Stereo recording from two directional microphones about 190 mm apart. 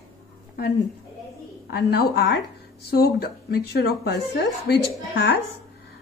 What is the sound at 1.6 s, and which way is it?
A woman's voice, 60° left (ahead or behind).